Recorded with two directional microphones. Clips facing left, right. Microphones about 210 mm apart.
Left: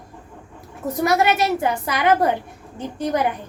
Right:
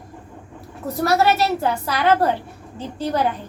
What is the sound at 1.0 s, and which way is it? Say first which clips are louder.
A woman's voice: right 1 dB; 20° left (ahead or behind).